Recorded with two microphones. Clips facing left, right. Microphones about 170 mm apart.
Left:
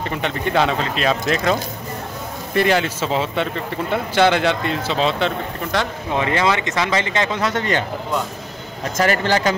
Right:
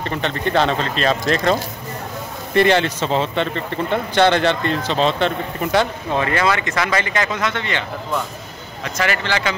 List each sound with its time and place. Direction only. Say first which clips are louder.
0.0 s speech: right 1 dB; 10° left (ahead or behind)
6.1 s speech: even; 20° left (ahead or behind)
7.5 s speech: left 4 dB; 45° left (ahead or behind)
8.9 s speech: left 4 dB; 45° left (ahead or behind)